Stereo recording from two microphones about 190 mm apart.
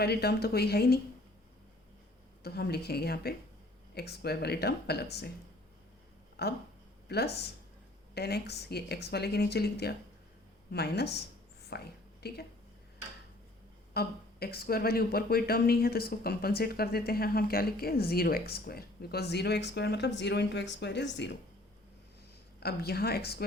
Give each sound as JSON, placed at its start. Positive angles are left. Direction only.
{"t": 0.0, "sound": "speech", "side_deg": 55}
{"t": 2.4, "sound": "speech", "side_deg": 55}
{"t": 6.4, "sound": "speech", "side_deg": 60}
{"t": 13.9, "sound": "speech", "side_deg": 55}
{"t": 22.6, "sound": "speech", "side_deg": 55}